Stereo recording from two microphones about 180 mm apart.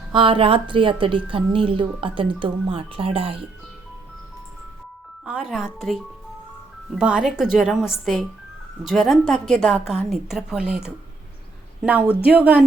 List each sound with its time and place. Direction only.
0.1 s speech: 30° right (ahead or behind)
5.2 s speech: 5° right (ahead or behind)